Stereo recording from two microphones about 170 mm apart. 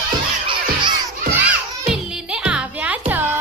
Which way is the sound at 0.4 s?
25° right (ahead or behind).